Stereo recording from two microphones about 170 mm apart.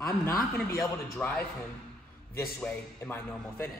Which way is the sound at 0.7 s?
Centre (ahead or behind).